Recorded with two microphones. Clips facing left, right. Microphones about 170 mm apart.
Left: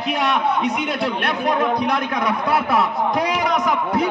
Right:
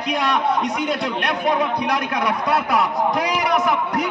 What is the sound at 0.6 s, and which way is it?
Speech, centre (ahead or behind).